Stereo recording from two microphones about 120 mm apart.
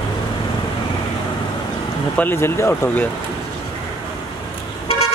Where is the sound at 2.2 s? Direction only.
20° left (ahead or behind).